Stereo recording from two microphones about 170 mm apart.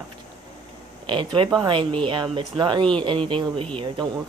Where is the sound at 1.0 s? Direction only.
30° right (ahead or behind).